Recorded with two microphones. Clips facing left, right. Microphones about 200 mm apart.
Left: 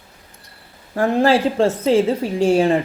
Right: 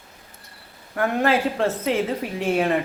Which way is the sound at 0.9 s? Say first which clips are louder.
Left 5 dB; 30° left (ahead or behind).